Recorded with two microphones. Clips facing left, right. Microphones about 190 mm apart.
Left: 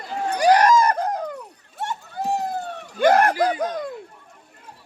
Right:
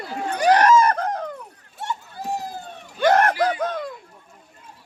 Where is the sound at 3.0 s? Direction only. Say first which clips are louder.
Left 1 dB; 10° left (ahead or behind).